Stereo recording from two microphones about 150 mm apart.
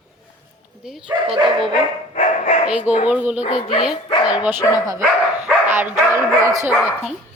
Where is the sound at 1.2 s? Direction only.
35° right (ahead or behind).